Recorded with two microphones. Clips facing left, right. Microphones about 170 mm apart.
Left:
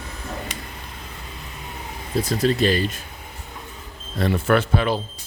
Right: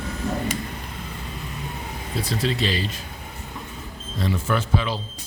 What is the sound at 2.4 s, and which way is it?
Speech, 50° left (ahead or behind).